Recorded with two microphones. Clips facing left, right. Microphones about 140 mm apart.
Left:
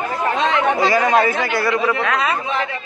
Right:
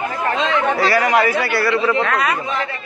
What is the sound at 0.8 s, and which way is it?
Speech, 20° left (ahead or behind).